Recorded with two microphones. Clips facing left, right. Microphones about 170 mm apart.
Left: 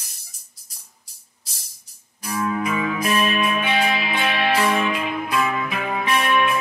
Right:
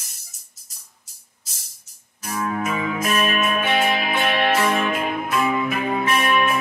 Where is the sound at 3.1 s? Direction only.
45° right (ahead or behind).